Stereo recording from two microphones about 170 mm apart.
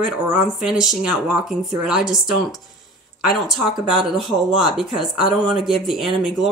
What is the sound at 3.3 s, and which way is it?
Speech, centre (ahead or behind).